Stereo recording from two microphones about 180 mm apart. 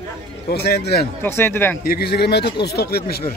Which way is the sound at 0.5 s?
65° left (ahead or behind).